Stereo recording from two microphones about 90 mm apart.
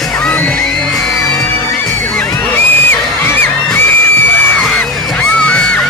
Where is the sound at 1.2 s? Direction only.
20° left (ahead or behind).